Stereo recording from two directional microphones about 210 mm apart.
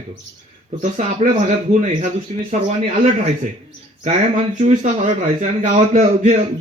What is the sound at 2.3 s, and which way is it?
A man's voice, 30° right (ahead or behind).